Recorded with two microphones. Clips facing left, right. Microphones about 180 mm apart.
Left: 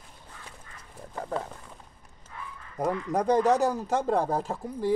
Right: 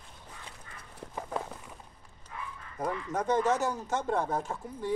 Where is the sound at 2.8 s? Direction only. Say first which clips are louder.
Left 5 dB; 35° left (ahead or behind).